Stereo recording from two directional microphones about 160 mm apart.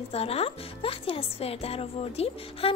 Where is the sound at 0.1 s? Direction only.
40° left (ahead or behind).